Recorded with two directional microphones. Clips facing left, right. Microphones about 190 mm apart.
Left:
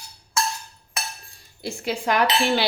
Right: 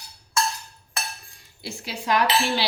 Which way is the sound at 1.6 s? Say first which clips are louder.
Left 7 dB; 55° left (ahead or behind).